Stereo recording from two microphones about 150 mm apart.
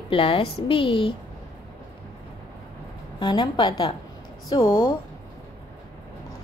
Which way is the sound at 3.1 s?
30° left (ahead or behind).